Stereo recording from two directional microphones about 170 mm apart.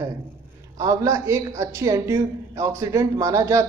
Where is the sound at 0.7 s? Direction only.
20° right (ahead or behind).